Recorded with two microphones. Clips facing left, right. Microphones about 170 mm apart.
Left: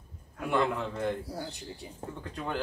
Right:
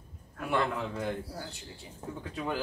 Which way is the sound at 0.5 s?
Centre (ahead or behind).